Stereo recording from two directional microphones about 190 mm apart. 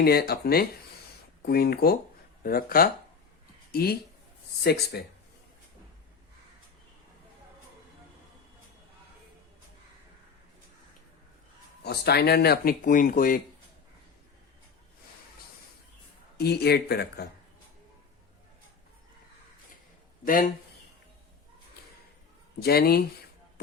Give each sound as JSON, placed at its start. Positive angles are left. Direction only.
{"t": 0.0, "sound": "speech", "side_deg": 55}
{"t": 11.8, "sound": "speech", "side_deg": 55}
{"t": 16.4, "sound": "speech", "side_deg": 55}
{"t": 20.2, "sound": "speech", "side_deg": 45}
{"t": 22.6, "sound": "speech", "side_deg": 55}